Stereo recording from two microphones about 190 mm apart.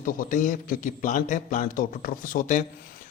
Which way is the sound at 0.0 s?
45° left (ahead or behind).